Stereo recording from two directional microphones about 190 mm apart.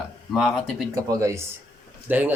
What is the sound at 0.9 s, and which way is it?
Speech, 15° right (ahead or behind).